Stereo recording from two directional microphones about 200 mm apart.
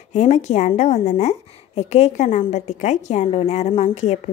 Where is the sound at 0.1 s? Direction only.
35° left (ahead or behind).